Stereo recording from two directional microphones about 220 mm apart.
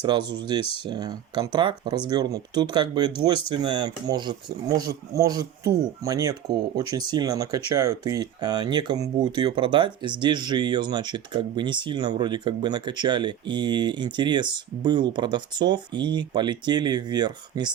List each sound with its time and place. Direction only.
0.0 s speech: 20° right (ahead or behind)